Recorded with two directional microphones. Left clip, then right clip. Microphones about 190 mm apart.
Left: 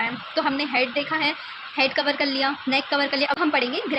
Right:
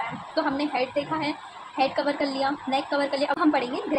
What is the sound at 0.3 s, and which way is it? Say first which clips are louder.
A woman's voice: left 3 dB; 25° left (ahead or behind).